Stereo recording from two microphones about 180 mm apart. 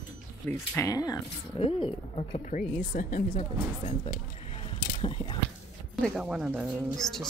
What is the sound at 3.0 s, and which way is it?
Speech, 50° left (ahead or behind).